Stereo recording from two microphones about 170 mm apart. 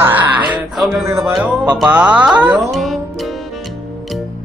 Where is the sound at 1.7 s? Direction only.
5° right (ahead or behind).